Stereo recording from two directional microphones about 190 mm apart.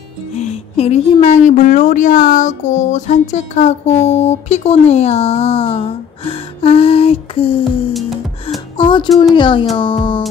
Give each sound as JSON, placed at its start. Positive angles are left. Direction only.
{"t": 0.4, "sound": "a woman's voice", "side_deg": 35}
{"t": 7.9, "sound": "music", "side_deg": 0}
{"t": 8.7, "sound": "speech", "side_deg": 25}